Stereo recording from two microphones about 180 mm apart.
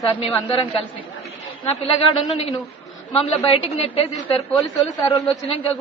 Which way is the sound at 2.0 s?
30° left (ahead or behind).